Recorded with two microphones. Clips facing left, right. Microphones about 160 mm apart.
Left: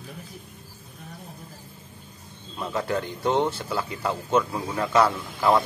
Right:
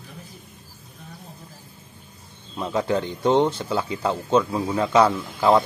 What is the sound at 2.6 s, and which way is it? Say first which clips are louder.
Speech: right 4 dB; 15° right (ahead or behind).